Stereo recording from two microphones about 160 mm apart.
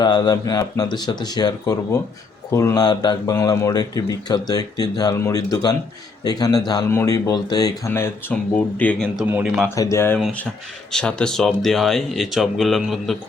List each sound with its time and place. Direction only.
0.0 s speech: 25° left (ahead or behind); by 9.0 s 10° left (ahead or behind)
9.2 s speech: 15° right (ahead or behind)
9.6 s speech: 20° left (ahead or behind)
10.2 s speech: centre (ahead or behind)